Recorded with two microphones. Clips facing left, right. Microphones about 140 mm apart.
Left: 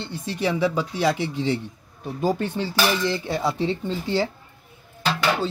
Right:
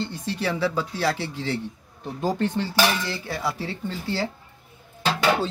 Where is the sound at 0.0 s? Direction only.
15° left (ahead or behind).